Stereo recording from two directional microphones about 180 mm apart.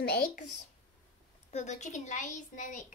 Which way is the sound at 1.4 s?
40° left (ahead or behind).